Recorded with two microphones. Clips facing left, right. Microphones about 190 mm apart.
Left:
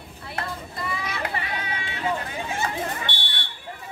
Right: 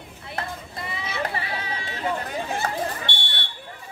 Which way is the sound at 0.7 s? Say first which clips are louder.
Right 1 dB; 25° right (ahead or behind).